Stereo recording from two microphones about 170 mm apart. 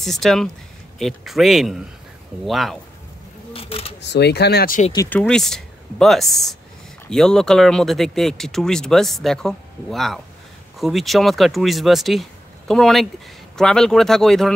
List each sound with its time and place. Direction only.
0.0 s speech: centre (ahead or behind)
3.5 s a sound: 35° left (ahead or behind)
4.0 s speech: 85° left
5.1 s speech: 5° left (ahead or behind)